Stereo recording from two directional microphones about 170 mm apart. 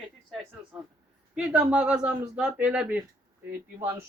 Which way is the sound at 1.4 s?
5° right (ahead or behind).